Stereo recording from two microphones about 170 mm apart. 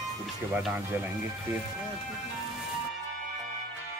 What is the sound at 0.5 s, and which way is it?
Speech, 10° right (ahead or behind).